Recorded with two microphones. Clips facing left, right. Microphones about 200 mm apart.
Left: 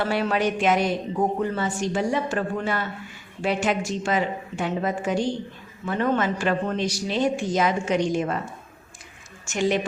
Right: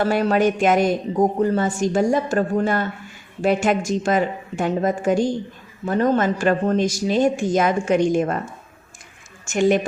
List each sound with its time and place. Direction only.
0.0 s a woman's voice: 45° right (ahead or behind)
9.5 s a woman's voice: 50° right (ahead or behind)